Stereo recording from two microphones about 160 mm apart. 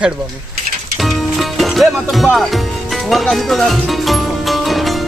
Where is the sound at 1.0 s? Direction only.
Centre (ahead or behind).